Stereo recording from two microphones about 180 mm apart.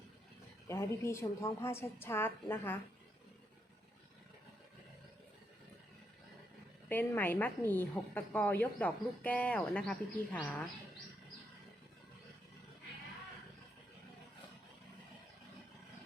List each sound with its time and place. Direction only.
0.7 s a woman's voice: 15° left (ahead or behind)
6.8 s a woman's voice: 10° left (ahead or behind)